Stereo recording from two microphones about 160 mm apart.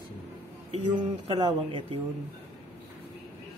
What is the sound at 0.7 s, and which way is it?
Speech, 30° right (ahead or behind).